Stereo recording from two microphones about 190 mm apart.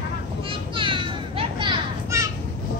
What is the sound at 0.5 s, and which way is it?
Children playing, 25° right (ahead or behind).